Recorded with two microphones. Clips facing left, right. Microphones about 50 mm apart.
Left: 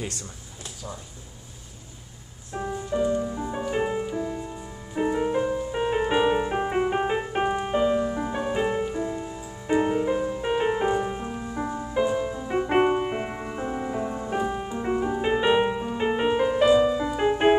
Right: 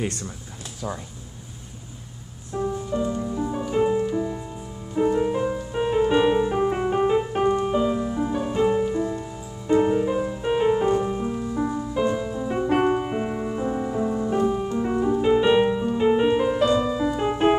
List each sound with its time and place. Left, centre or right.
2.5 s music: left
3.0 s music: centre